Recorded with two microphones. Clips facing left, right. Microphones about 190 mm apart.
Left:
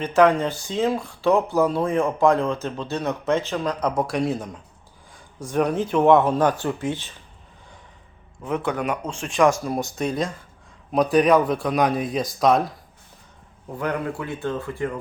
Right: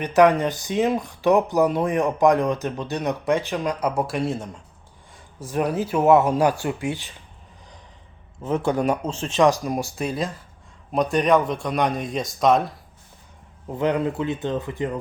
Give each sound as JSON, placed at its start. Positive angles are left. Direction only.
{"t": 0.0, "sound": "speech", "side_deg": -15}
{"t": 8.4, "sound": "speech", "side_deg": -30}
{"t": 10.0, "sound": "speech", "side_deg": -5}
{"t": 13.7, "sound": "speech", "side_deg": -20}